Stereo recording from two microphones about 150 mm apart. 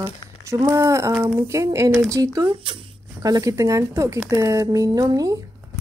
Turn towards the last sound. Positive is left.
turn(degrees=-25)  # may be behind; listen again after turning